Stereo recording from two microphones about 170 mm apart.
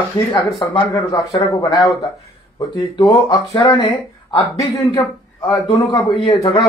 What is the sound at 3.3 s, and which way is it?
Speech, 25° left (ahead or behind).